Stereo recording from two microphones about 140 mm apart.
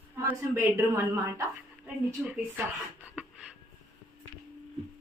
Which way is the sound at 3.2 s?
5° right (ahead or behind).